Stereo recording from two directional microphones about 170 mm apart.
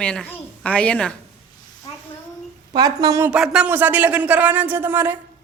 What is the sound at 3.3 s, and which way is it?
Speech, 5° right (ahead or behind).